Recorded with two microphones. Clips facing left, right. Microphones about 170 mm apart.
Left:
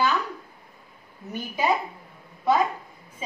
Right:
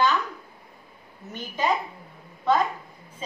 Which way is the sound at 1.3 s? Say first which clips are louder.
Left 1 dB; 10° left (ahead or behind).